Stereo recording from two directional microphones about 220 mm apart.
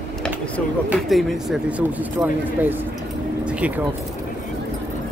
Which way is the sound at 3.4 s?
5° right (ahead or behind).